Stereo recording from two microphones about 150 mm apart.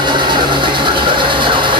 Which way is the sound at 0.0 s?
30° right (ahead or behind).